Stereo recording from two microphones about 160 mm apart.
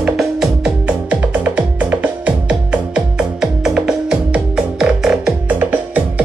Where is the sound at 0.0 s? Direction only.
5° right (ahead or behind).